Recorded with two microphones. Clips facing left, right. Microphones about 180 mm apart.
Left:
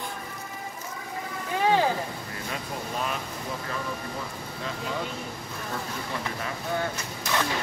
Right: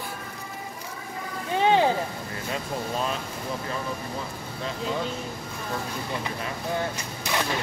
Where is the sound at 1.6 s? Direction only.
20° right (ahead or behind).